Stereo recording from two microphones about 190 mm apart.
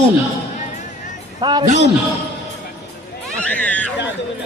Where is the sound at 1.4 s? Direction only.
25° right (ahead or behind).